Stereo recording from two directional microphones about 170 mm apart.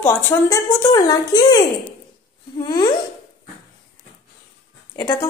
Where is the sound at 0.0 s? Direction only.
15° left (ahead or behind).